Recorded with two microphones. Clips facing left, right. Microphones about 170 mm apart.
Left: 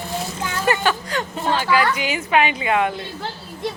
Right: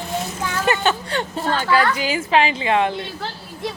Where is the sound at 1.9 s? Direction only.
30° right (ahead or behind).